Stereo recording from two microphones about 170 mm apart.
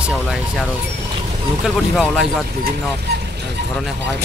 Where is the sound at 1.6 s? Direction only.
Centre (ahead or behind).